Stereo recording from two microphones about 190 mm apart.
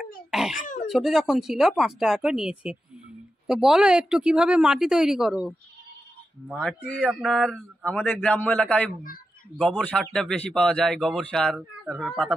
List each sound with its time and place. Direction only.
0.3 s a man's voice: centre (ahead or behind)
0.6 s speech: 40° left (ahead or behind)
0.8 s a man's voice: centre (ahead or behind)